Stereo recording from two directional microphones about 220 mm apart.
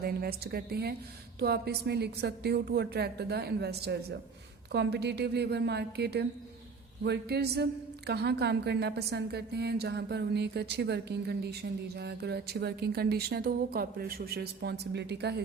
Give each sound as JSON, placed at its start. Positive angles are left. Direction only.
{"t": 0.0, "sound": "a woman's voice", "side_deg": -45}